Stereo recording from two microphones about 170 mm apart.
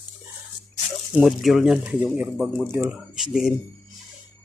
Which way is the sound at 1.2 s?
Centre (ahead or behind).